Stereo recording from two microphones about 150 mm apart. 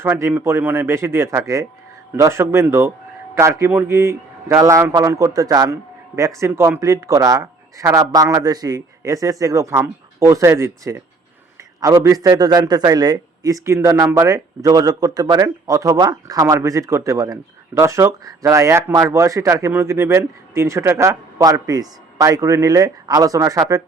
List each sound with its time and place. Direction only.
0.0 s a man's voice: 15° right (ahead or behind)